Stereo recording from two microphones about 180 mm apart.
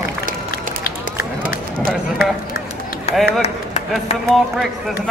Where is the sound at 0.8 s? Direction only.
55° left (ahead or behind).